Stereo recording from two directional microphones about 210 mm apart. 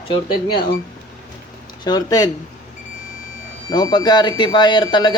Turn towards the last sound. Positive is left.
turn(degrees=20)  # may be behind; listen again after turning